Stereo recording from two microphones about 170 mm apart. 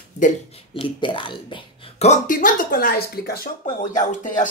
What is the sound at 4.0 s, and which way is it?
Speech, 50° left (ahead or behind).